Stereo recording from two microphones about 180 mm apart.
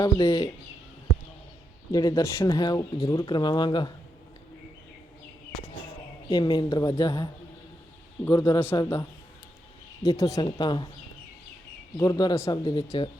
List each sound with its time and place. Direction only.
0.0 s speech: 25° left (ahead or behind)
1.9 s speech: 20° left (ahead or behind)
6.2 s speech: 20° left (ahead or behind)
8.3 s a man's voice: 20° left (ahead or behind)
8.5 s a man's voice: 30° left (ahead or behind)
8.8 s speech: 20° left (ahead or behind)
11.9 s speech: 20° left (ahead or behind)